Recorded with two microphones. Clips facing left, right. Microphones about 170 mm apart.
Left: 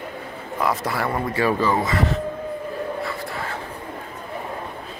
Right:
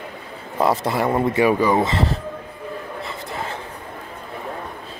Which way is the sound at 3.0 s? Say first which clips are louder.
Even; 20° right (ahead or behind).